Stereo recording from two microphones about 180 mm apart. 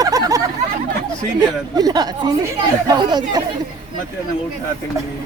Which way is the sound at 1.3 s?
20° right (ahead or behind).